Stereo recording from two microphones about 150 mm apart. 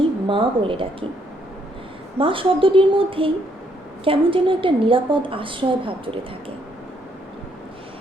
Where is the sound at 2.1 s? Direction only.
35° right (ahead or behind).